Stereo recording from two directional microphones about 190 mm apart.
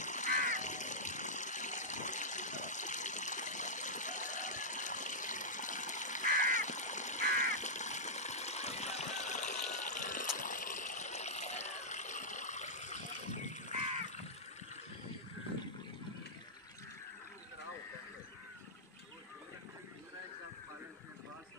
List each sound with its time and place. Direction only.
0.0 s water: 40° left (ahead or behind)